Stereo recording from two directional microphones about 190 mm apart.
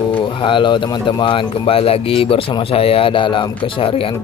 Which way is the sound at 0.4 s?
25° left (ahead or behind).